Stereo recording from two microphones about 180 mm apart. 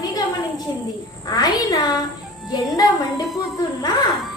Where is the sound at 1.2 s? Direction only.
20° left (ahead or behind).